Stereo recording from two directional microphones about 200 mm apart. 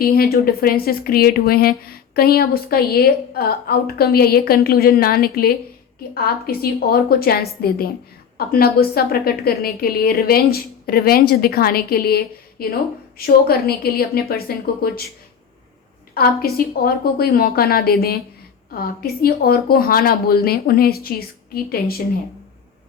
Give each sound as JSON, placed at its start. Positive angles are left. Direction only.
{"t": 0.0, "sound": "a woman's voice", "side_deg": 50}
{"t": 16.1, "sound": "a woman's voice", "side_deg": 50}